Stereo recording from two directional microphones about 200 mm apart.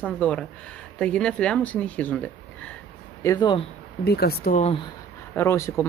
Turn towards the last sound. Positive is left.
turn(degrees=15)  # may be behind; listen again after turning